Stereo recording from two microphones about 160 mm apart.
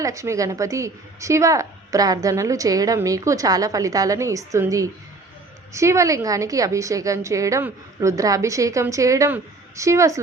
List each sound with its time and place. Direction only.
0.0 s a woman's voice: 20° right (ahead or behind)